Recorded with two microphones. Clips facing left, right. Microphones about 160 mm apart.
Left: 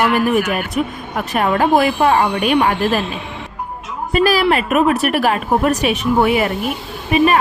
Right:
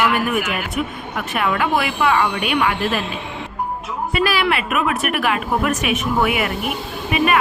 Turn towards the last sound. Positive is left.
turn(degrees=35)  # may be behind; listen again after turning